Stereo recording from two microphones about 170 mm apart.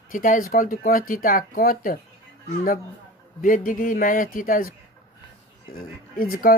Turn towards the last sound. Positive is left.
turn(degrees=60)  # may be behind; listen again after turning